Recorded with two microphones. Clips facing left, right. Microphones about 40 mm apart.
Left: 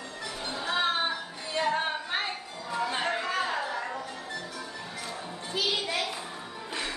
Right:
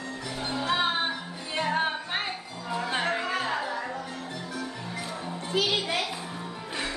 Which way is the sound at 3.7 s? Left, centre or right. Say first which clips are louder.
Right 1 dB; centre.